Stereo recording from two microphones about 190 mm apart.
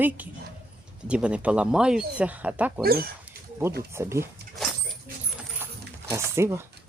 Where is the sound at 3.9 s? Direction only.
15° right (ahead or behind).